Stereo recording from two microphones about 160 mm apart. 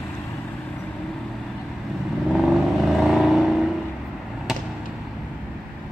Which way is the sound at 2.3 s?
Centre (ahead or behind).